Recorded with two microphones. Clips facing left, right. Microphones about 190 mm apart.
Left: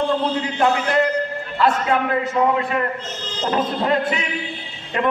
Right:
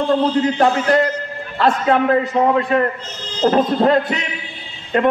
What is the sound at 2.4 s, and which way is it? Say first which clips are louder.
A man's voice: right 1 dB; 30° right (ahead or behind).